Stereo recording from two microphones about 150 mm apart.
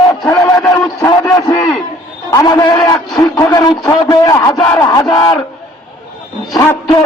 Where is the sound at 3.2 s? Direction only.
25° left (ahead or behind).